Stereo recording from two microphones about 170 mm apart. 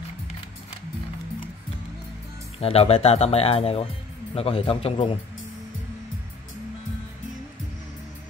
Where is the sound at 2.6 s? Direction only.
35° left (ahead or behind).